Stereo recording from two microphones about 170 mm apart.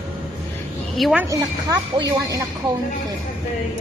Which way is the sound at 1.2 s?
20° right (ahead or behind).